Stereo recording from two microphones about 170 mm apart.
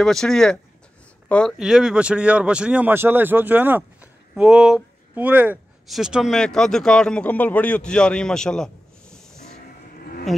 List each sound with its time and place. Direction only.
0.0 s speech: centre (ahead or behind)